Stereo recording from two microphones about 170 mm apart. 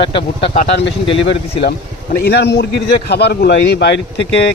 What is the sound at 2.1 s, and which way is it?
Speech, 75° left (ahead or behind).